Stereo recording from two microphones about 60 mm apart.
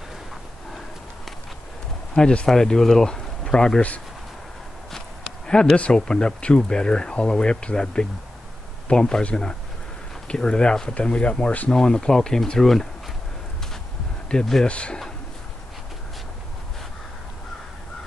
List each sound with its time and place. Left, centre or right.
2.1 s speech: centre
5.8 s speech: centre
11.7 s speech: centre
14.3 s speech: centre